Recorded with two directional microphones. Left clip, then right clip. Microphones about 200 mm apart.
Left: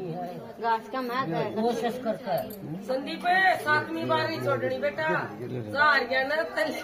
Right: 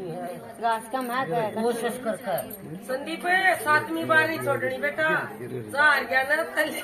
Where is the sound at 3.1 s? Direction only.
Centre (ahead or behind).